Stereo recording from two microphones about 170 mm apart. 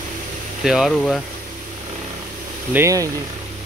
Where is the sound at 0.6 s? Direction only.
5° right (ahead or behind).